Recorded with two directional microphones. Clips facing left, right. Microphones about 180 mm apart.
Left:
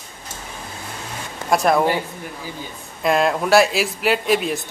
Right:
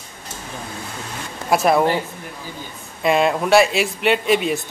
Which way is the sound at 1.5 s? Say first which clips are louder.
Right 1 dB; 5° right (ahead or behind).